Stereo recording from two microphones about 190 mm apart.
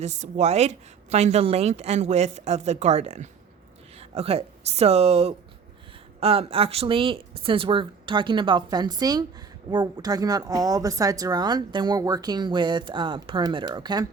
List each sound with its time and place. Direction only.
0.0 s a woman's voice: 35° right (ahead or behind); by 14.1 s 20° right (ahead or behind)